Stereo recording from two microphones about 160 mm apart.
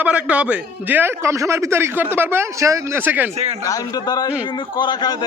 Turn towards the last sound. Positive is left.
turn(degrees=25)  # may be behind; listen again after turning